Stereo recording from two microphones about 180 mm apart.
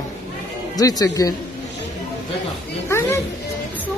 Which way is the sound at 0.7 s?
20° left (ahead or behind).